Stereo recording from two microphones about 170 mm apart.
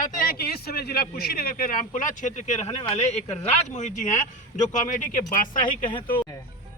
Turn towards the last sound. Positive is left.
turn(degrees=30)  # may be behind; listen again after turning